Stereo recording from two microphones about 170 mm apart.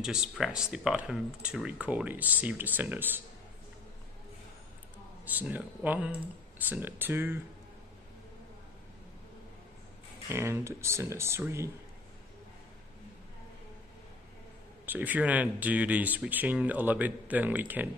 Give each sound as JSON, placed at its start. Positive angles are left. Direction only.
{"t": 0.0, "sound": "speech", "side_deg": -5}
{"t": 5.2, "sound": "speech", "side_deg": -10}
{"t": 10.3, "sound": "speech", "side_deg": -15}
{"t": 14.9, "sound": "speech", "side_deg": -10}